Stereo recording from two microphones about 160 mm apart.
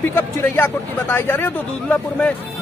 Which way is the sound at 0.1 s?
15° left (ahead or behind).